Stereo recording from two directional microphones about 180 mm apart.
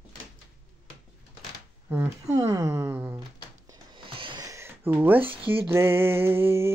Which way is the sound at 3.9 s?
30° right (ahead or behind).